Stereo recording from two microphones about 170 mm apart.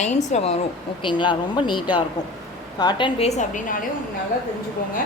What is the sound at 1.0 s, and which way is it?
A woman's voice, 30° left (ahead or behind).